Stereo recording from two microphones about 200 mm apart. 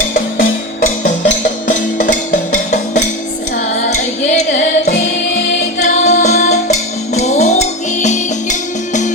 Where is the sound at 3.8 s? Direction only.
35° left (ahead or behind).